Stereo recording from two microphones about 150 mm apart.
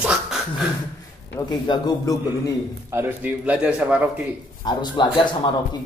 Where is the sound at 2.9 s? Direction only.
10° right (ahead or behind).